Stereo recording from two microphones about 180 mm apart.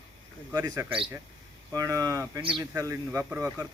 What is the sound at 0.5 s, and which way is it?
Speech, 20° right (ahead or behind).